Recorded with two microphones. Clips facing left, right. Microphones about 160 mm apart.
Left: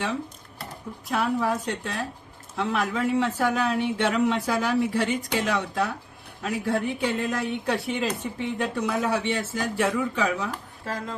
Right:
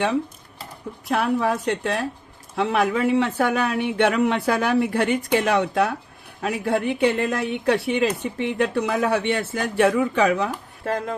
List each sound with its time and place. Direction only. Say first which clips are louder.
1.0 s a man's voice: right 4 dB; 65° right (ahead or behind)